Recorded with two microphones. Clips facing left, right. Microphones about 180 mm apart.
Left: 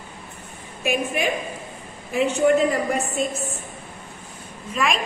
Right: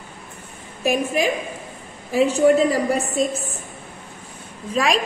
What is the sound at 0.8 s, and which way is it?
A woman's voice, 35° right (ahead or behind).